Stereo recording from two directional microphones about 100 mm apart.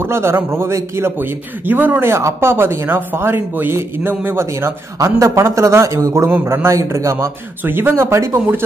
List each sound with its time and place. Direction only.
0.0 s speech: 25° right (ahead or behind)